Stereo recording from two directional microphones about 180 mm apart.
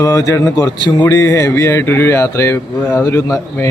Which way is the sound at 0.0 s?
20° left (ahead or behind).